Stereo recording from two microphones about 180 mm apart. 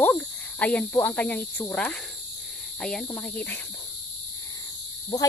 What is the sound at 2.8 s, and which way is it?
Cricket, 5° left (ahead or behind).